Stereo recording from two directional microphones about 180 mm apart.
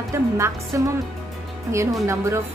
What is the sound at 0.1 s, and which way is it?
Speech, 15° right (ahead or behind).